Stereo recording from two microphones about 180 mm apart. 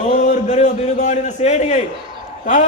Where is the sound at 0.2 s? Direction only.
45° left (ahead or behind).